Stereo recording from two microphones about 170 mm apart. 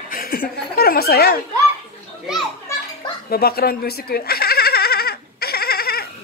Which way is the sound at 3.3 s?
65° left (ahead or behind).